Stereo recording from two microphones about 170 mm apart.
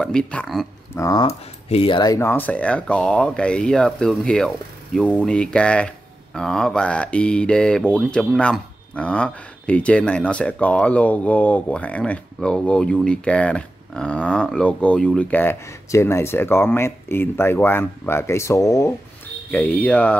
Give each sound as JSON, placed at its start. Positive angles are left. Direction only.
{"t": 0.0, "sound": "speech", "side_deg": 5}
{"t": 0.9, "sound": "speech", "side_deg": 20}
{"t": 1.7, "sound": "speech", "side_deg": 35}